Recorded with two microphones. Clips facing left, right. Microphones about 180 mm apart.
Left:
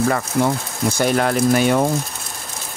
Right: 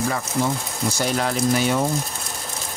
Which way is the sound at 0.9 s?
55° left (ahead or behind).